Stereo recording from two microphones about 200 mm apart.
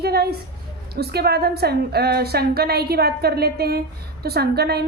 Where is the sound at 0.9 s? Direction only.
55° right (ahead or behind).